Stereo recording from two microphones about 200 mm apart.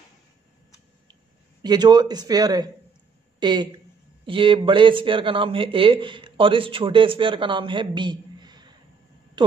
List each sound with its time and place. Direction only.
1.6 s speech: 20° right (ahead or behind)